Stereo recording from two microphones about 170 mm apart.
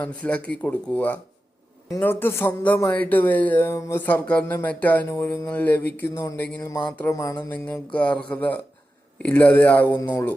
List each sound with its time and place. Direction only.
0.0 s speech: 5° left (ahead or behind)